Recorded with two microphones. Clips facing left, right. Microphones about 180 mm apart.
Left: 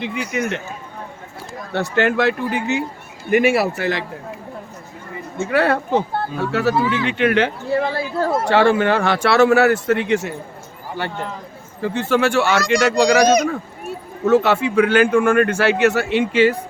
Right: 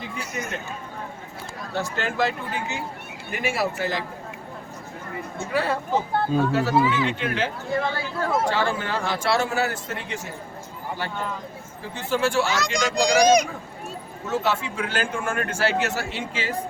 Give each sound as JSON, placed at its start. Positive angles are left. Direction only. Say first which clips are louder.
{"t": 0.0, "sound": "speech", "louder": "left 9 dB", "side_deg": 75}
{"t": 1.7, "sound": "speech", "louder": "left 9 dB", "side_deg": 65}
{"t": 5.4, "sound": "speech", "louder": "left 8 dB", "side_deg": 70}
{"t": 7.7, "sound": "a sound", "louder": "left 6 dB", "side_deg": 35}
{"t": 8.4, "sound": "speech", "louder": "left 10 dB", "side_deg": 70}
{"t": 11.8, "sound": "speech", "louder": "left 7 dB", "side_deg": 70}
{"t": 14.3, "sound": "speech", "louder": "left 10 dB", "side_deg": 65}